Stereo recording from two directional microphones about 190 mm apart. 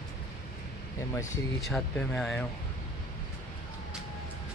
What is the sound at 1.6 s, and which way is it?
Speech, centre (ahead or behind).